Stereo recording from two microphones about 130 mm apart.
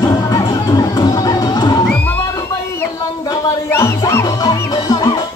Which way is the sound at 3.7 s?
20° left (ahead or behind).